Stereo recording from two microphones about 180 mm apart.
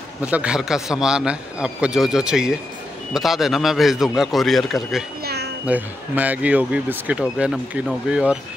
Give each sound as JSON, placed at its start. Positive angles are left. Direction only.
{"t": 0.2, "sound": "a man's voice", "side_deg": -5}
{"t": 5.2, "sound": "a sound", "side_deg": -65}
{"t": 5.7, "sound": "speech", "side_deg": -10}